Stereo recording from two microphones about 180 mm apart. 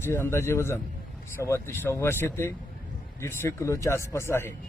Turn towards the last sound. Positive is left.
turn(degrees=15)  # may be behind; listen again after turning